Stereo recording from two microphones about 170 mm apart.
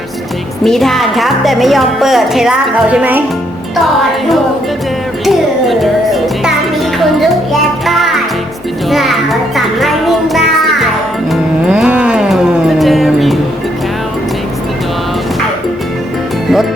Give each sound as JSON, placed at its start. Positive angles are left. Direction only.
{"t": 0.6, "sound": "speech", "side_deg": 0}
{"t": 5.2, "sound": "speech", "side_deg": 0}
{"t": 7.9, "sound": "music", "side_deg": 0}